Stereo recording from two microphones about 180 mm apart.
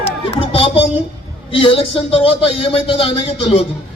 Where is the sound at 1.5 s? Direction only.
30° left (ahead or behind).